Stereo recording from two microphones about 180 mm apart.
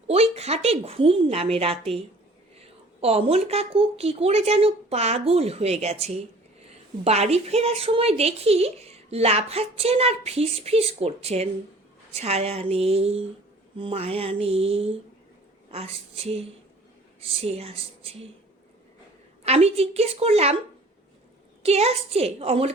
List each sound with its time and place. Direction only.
0.1 s a woman's voice: 35° right (ahead or behind)
3.0 s a woman's voice: 35° right (ahead or behind)
19.5 s a woman's voice: 35° right (ahead or behind)
21.6 s a woman's voice: 35° right (ahead or behind)